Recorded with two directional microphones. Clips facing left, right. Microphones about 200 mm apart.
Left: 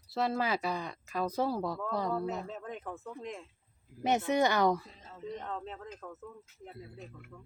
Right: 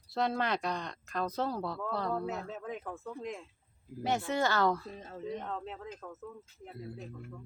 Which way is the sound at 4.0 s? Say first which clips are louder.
Left 3 dB; 20° left (ahead or behind).